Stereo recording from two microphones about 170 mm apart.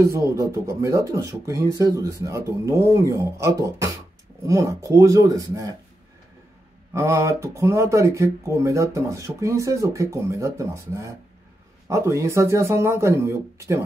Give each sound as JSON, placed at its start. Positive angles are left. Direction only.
{"t": 0.0, "sound": "speech", "side_deg": -15}
{"t": 6.9, "sound": "speech", "side_deg": -15}